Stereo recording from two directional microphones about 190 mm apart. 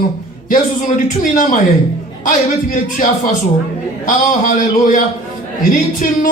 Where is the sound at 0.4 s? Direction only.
45° left (ahead or behind).